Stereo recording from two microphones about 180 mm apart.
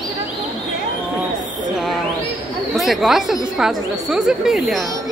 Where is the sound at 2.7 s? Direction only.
Centre (ahead or behind).